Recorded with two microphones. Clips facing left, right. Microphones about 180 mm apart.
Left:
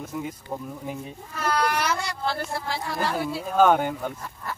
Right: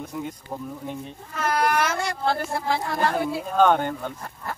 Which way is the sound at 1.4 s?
50° right (ahead or behind).